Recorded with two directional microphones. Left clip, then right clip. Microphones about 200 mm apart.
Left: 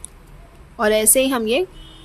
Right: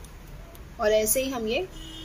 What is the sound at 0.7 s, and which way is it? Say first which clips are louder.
Speech: left 6 dB; 40° left (ahead or behind).